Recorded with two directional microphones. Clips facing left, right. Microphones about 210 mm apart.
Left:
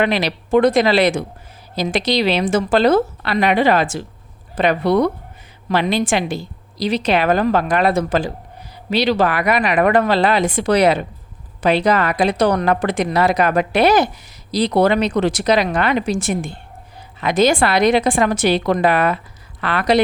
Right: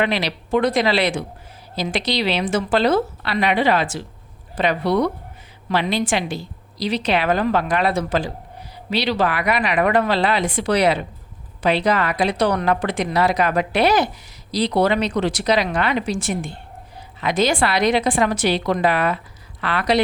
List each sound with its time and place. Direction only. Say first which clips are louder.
0.0 s a woman's voice: left 3 dB; 45° left (ahead or behind)